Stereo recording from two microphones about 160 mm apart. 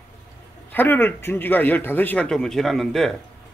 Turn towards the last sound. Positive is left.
turn(degrees=0)  # may be behind; listen again after turning